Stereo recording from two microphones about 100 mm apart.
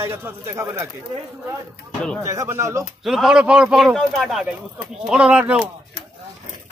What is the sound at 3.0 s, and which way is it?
A man's voice, centre (ahead or behind).